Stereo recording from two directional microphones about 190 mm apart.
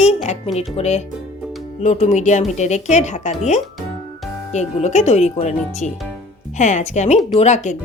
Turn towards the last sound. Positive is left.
turn(degrees=35)  # may be behind; listen again after turning